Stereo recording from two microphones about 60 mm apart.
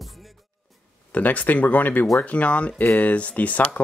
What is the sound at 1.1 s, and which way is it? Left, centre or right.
Speech, left.